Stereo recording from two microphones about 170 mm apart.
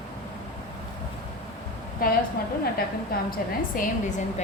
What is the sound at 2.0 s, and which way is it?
Speech, 55° left (ahead or behind).